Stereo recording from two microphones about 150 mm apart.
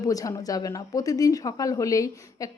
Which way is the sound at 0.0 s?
25° left (ahead or behind).